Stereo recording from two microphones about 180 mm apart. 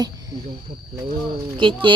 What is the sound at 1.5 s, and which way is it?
Speech, 25° right (ahead or behind).